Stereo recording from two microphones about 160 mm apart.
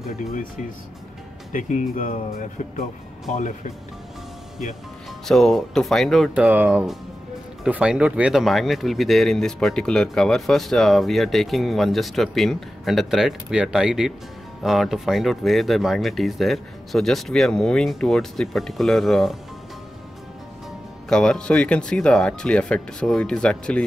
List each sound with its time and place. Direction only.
1.5 s speech: 50° left (ahead or behind)
5.2 s speech: centre (ahead or behind)
21.1 s speech: 5° left (ahead or behind)